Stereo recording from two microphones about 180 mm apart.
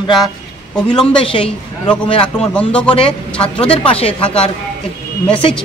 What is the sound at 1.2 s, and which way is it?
Speech, 30° left (ahead or behind).